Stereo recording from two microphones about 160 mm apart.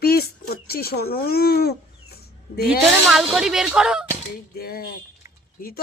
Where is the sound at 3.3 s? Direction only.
5° right (ahead or behind).